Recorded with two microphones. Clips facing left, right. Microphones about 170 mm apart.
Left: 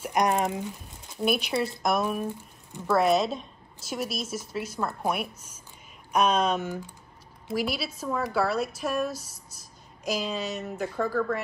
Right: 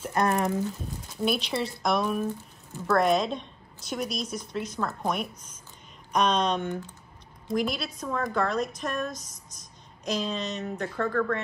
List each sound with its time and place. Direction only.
0.0 s a woman's voice: 15° left (ahead or behind)
0.8 s a woman's voice: centre (ahead or behind)
2.2 s speech: 15° left (ahead or behind)
3.0 s a woman's voice: 5° left (ahead or behind)